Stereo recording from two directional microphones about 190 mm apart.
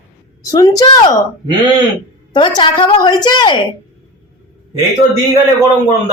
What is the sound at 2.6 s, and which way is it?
A woman's voice, 25° left (ahead or behind).